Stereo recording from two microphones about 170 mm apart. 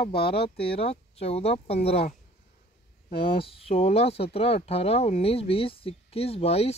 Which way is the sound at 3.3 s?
35° left (ahead or behind).